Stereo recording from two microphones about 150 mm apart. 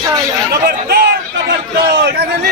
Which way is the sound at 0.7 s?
90° right.